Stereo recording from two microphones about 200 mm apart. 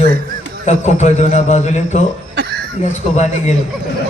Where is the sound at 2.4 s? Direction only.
55° right (ahead or behind).